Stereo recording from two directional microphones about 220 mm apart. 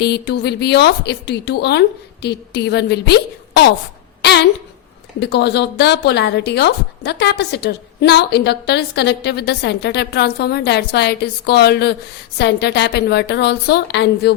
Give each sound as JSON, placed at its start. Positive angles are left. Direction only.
{"t": 0.0, "sound": "speech", "side_deg": 50}
{"t": 4.2, "sound": "a sound", "side_deg": 50}
{"t": 5.2, "sound": "speech", "side_deg": 50}